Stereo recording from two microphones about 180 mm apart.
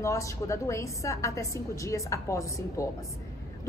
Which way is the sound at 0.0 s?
15° left (ahead or behind).